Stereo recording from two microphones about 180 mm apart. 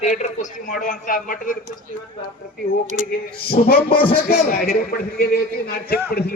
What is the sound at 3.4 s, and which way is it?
A man's voice, 60° left (ahead or behind).